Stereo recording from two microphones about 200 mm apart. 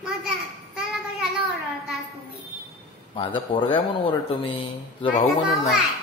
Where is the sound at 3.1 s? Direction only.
25° left (ahead or behind).